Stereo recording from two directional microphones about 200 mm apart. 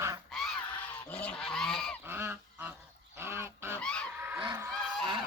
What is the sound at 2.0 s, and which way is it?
Goose, 10° right (ahead or behind).